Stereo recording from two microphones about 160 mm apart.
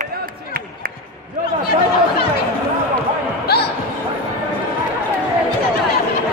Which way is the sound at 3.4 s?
85° left.